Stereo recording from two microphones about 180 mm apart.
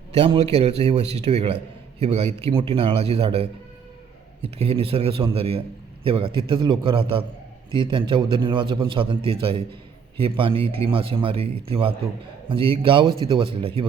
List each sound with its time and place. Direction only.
0.1 s a man's voice: 35° right (ahead or behind)
4.5 s a man's voice: 35° right (ahead or behind)